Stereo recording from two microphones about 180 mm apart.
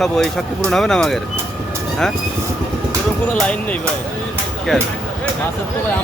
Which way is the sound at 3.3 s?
5° left (ahead or behind).